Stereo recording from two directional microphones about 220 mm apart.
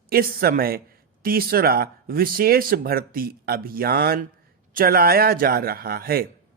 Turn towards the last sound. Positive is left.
turn(degrees=-45)  # may be behind; listen again after turning